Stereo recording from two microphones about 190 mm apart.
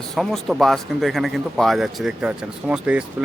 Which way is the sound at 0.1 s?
Centre (ahead or behind).